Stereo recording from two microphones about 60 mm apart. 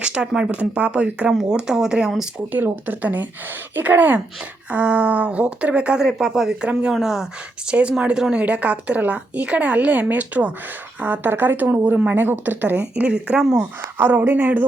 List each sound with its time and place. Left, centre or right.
0.0 s speech: centre
1.3 s speech: centre
2.5 s a woman's voice: right; by 6.6 s centre
6.6 s speech: centre
6.9 s speech: centre
7.7 s a woman's voice: centre
12.8 s speech: centre
13.4 s speech: centre
14.0 s a woman's voice: right